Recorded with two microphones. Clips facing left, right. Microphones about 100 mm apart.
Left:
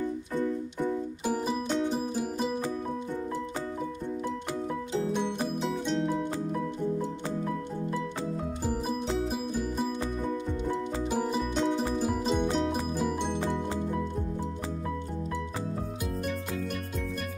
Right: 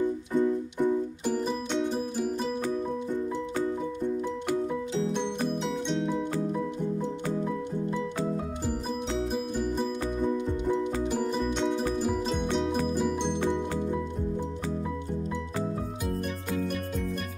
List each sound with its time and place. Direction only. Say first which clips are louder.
0.0 s music: right 5 dB; 15° right (ahead or behind)
1.2 s music: even; 10° left (ahead or behind)
5.6 s music: even; centre (ahead or behind)
11.1 s music: right 1 dB; 10° left (ahead or behind)